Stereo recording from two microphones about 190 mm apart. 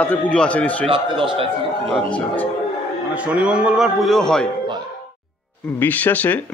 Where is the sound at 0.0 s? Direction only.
5° left (ahead or behind).